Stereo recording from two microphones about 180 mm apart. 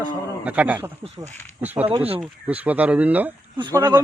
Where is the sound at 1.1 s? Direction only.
40° right (ahead or behind).